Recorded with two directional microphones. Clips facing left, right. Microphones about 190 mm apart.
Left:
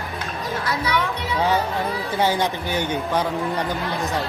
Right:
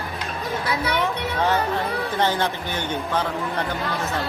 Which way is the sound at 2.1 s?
10° left (ahead or behind).